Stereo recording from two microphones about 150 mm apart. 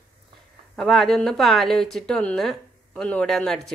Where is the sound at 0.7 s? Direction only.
5° left (ahead or behind).